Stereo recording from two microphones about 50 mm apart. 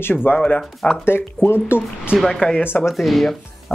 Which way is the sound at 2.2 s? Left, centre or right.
Centre.